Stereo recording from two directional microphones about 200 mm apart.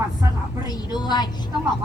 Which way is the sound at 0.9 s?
20° left (ahead or behind).